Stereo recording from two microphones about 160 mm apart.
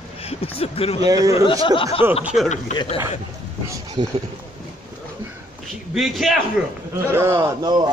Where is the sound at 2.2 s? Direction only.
5° right (ahead or behind).